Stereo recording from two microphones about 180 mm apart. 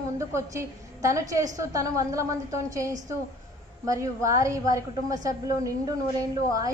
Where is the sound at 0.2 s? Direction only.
15° right (ahead or behind).